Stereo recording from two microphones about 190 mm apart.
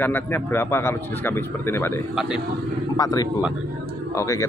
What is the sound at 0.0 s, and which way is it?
Speech, 10° left (ahead or behind).